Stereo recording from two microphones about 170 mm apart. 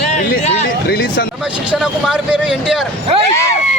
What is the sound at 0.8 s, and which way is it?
Speech, 65° left (ahead or behind).